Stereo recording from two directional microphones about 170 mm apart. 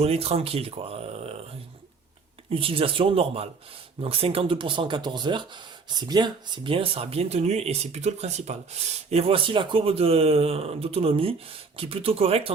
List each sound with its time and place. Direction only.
0.0 s speech: 35° right (ahead or behind)